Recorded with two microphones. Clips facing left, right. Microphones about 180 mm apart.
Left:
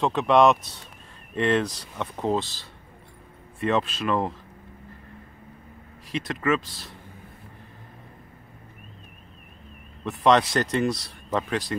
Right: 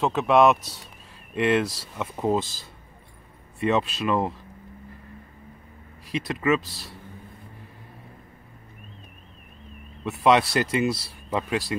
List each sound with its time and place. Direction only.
0.0 s speech: 5° right (ahead or behind)
3.6 s speech: 5° right (ahead or behind)
6.2 s speech: 10° right (ahead or behind)
10.0 s speech: 5° right (ahead or behind)